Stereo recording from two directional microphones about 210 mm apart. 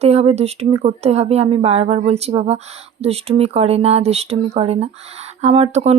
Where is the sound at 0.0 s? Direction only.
30° right (ahead or behind).